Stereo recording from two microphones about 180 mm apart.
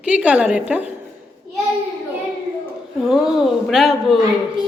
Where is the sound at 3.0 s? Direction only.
Centre (ahead or behind).